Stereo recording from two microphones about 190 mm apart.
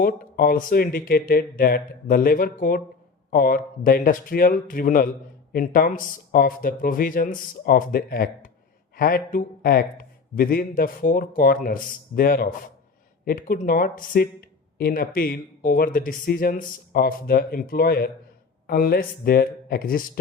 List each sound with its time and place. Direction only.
0.0 s a man's voice: 50° left (ahead or behind)